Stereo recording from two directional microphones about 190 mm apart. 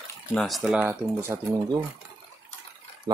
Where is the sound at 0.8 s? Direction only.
15° right (ahead or behind).